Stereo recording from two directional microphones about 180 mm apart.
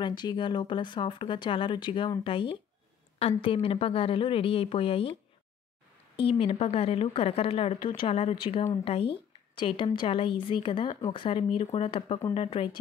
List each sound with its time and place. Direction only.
0.0 s speech: 25° left (ahead or behind)
6.2 s speech: 30° left (ahead or behind)